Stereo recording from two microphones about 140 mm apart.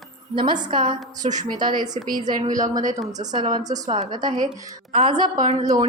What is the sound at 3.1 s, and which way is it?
A woman's voice, 25° right (ahead or behind).